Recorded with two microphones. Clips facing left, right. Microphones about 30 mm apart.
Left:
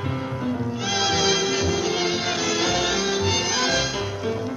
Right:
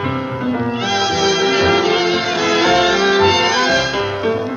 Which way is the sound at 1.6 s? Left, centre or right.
Right.